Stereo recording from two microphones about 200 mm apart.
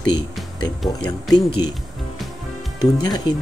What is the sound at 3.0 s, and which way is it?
Speech, 20° left (ahead or behind).